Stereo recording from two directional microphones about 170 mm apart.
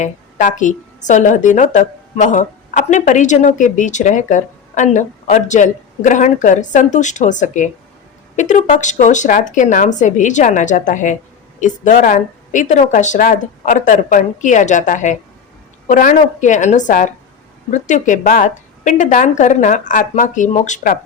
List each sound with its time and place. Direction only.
0.0 s a woman's voice: 50° left (ahead or behind)